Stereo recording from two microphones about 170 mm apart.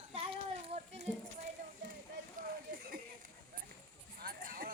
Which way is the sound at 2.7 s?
60° right (ahead or behind).